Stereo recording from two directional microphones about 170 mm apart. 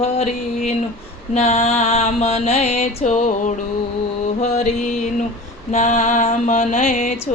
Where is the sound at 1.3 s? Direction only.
40° left (ahead or behind).